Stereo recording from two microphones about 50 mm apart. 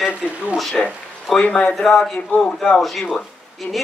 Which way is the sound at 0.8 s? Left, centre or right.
Centre.